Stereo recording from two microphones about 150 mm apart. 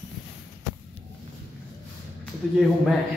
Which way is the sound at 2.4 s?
Centre (ahead or behind).